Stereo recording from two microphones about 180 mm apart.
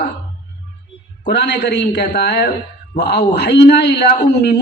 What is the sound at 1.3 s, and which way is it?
A man's voice, 70° left (ahead or behind).